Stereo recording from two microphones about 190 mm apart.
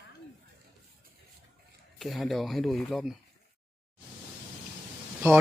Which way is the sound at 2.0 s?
Centre (ahead or behind).